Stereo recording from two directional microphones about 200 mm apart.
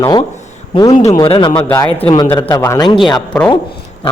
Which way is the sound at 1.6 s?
10° left (ahead or behind).